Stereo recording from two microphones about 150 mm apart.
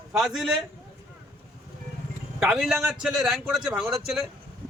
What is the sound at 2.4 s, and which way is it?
A man's voice, centre (ahead or behind).